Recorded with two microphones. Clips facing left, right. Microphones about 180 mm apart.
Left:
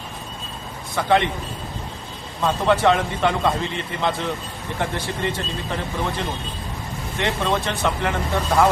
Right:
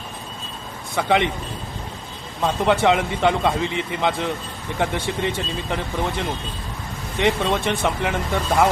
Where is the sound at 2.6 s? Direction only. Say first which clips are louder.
Even; 15° right (ahead or behind).